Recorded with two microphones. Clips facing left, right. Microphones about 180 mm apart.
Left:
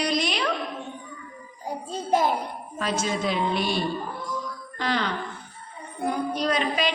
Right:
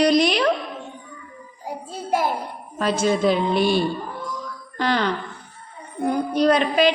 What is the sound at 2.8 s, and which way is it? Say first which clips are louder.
Speech: right 7 dB; 55° right (ahead or behind).